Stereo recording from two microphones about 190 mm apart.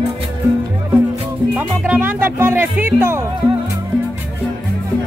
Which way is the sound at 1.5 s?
10° right (ahead or behind).